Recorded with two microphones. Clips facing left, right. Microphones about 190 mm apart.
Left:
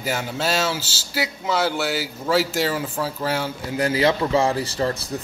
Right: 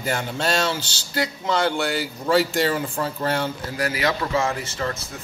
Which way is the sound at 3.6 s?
25° left (ahead or behind).